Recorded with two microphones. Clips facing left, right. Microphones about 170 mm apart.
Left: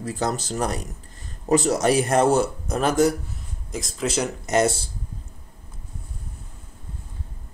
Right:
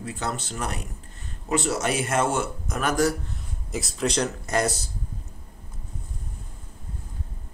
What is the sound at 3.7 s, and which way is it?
Speech, centre (ahead or behind).